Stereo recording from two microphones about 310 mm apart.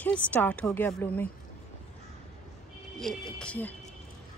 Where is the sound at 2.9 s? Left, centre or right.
Centre.